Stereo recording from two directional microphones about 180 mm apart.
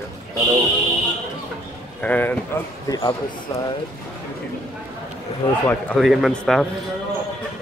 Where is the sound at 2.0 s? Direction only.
10° left (ahead or behind).